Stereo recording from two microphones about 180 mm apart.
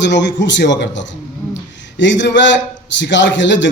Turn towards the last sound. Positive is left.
turn(degrees=90)